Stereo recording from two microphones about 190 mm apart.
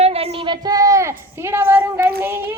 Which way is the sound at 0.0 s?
25° right (ahead or behind).